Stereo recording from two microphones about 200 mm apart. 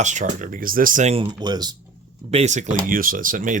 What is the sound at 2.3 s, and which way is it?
Speech, 35° right (ahead or behind).